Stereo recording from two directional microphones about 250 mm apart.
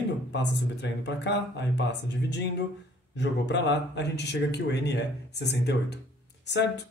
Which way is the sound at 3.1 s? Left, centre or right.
Left.